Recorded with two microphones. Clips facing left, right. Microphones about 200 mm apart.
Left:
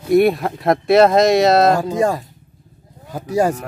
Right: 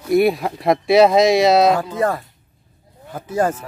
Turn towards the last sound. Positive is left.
turn(degrees=10)  # may be behind; listen again after turning